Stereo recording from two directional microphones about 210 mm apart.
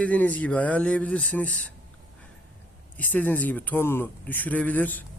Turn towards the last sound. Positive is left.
turn(degrees=10)  # may be behind; listen again after turning